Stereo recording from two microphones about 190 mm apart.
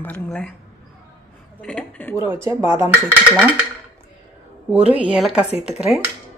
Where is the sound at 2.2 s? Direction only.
15° right (ahead or behind).